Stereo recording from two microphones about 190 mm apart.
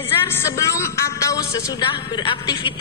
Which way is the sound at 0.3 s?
15° left (ahead or behind).